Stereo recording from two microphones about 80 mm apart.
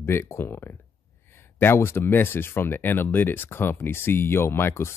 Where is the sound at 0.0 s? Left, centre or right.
Left.